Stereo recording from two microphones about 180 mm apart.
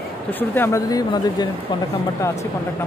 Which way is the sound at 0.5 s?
15° left (ahead or behind).